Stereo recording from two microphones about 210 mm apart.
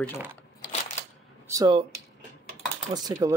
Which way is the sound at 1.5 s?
20° right (ahead or behind).